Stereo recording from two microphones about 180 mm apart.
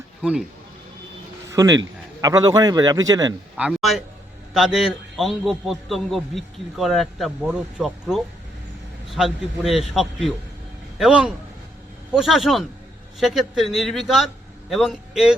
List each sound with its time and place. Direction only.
0.2 s speech: 5° right (ahead or behind)
1.5 s a man's voice: 20° right (ahead or behind)
3.6 s a man's voice: centre (ahead or behind)